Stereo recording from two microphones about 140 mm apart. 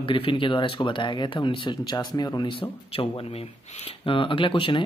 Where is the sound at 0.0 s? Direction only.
40° left (ahead or behind).